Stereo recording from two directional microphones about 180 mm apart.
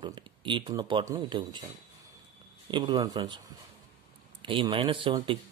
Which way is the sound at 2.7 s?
25° right (ahead or behind).